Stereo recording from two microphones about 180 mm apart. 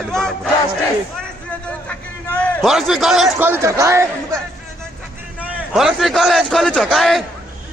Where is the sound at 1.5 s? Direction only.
5° left (ahead or behind).